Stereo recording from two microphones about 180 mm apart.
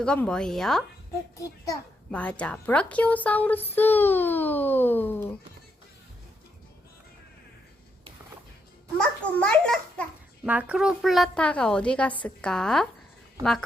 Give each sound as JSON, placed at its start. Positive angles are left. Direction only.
{"t": 0.0, "sound": "a woman's voice", "side_deg": 5}
{"t": 1.4, "sound": "a child's voice", "side_deg": 20}
{"t": 2.4, "sound": "a child's voice", "side_deg": 5}
{"t": 9.0, "sound": "a child's voice", "side_deg": 5}
{"t": 10.4, "sound": "a woman's voice", "side_deg": -10}